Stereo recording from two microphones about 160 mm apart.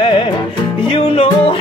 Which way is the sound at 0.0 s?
35° left (ahead or behind).